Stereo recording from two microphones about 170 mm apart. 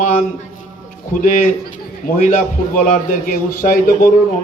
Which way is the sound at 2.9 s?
50° left (ahead or behind).